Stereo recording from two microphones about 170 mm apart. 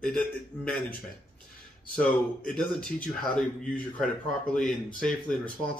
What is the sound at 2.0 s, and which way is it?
Speech, 5° left (ahead or behind).